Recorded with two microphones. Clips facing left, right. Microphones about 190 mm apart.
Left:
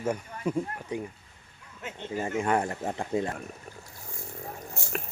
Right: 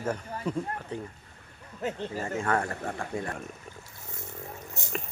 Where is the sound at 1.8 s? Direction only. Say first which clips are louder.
Right 9 dB; 35° right (ahead or behind).